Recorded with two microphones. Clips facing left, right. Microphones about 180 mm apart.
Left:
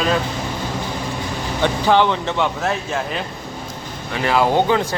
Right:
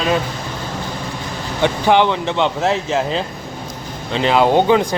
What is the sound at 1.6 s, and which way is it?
Speech, 15° right (ahead or behind).